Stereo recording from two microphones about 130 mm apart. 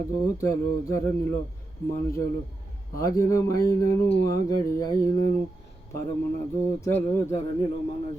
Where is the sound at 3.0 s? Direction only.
25° left (ahead or behind).